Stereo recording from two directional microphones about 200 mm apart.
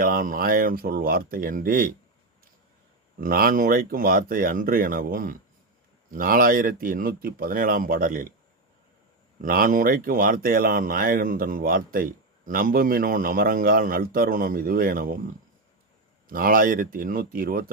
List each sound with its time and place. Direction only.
0.0 s speech: 45° right (ahead or behind)
3.2 s speech: 45° right (ahead or behind)
9.4 s speech: 45° right (ahead or behind)
16.3 s speech: 45° right (ahead or behind)